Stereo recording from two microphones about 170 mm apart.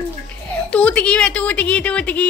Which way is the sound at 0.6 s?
5° left (ahead or behind).